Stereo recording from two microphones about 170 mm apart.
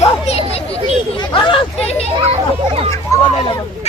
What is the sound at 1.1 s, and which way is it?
Hubbub, 30° left (ahead or behind).